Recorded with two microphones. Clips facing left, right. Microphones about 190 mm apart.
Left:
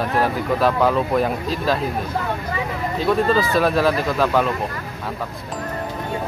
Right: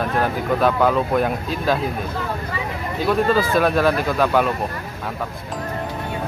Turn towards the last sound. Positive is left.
turn(degrees=0)  # may be behind; listen again after turning